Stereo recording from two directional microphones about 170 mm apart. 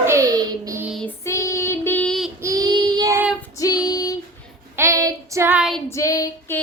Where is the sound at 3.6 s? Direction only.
20° left (ahead or behind).